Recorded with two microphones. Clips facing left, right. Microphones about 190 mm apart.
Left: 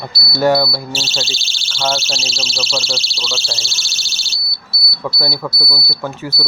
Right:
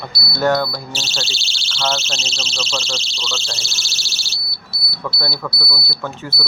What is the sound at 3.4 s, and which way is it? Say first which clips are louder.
Speech: left 3 dB; centre (ahead or behind).